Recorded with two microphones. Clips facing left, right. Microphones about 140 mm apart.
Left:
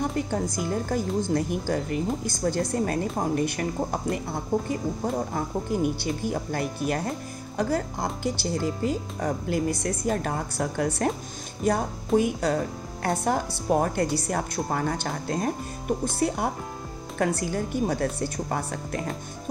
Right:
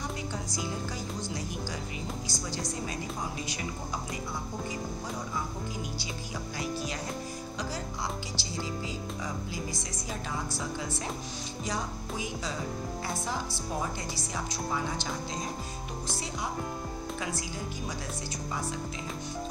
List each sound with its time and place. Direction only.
0.0 s a woman's voice: 55° left (ahead or behind)